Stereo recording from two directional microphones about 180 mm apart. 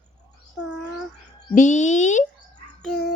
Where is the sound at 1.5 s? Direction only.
45° left (ahead or behind).